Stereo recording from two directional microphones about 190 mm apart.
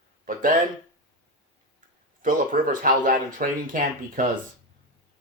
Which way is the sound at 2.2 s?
45° right (ahead or behind).